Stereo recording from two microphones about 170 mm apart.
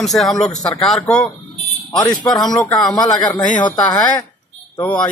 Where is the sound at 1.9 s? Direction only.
25° left (ahead or behind).